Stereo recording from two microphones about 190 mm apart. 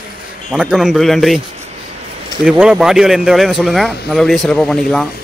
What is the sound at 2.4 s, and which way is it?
Speech, 5° right (ahead or behind).